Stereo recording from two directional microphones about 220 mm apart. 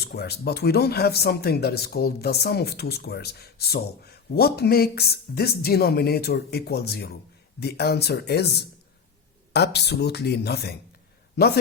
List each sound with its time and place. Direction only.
0.0 s speech: 45° left (ahead or behind)
9.5 s speech: 50° left (ahead or behind)